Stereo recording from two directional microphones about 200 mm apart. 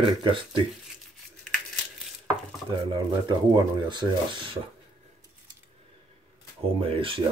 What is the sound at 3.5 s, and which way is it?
Speech, 25° right (ahead or behind).